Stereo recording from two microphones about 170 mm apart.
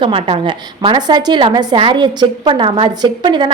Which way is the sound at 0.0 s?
30° right (ahead or behind).